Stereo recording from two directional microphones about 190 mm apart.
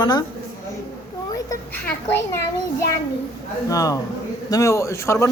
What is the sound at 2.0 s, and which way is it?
Speech, 10° left (ahead or behind).